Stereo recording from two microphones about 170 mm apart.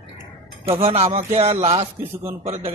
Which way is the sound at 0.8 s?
40° right (ahead or behind).